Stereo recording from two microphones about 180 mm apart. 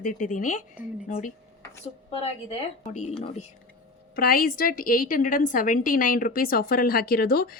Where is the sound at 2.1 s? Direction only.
35° left (ahead or behind).